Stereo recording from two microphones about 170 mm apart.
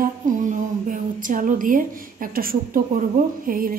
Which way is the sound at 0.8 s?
50° right (ahead or behind).